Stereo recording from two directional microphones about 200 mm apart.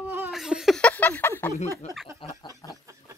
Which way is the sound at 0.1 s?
5° right (ahead or behind).